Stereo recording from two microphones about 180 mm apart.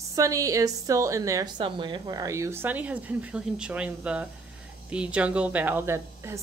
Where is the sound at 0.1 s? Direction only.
20° right (ahead or behind).